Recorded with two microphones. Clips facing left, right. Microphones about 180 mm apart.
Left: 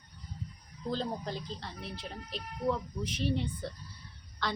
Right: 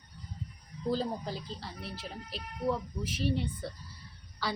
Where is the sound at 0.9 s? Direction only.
5° right (ahead or behind).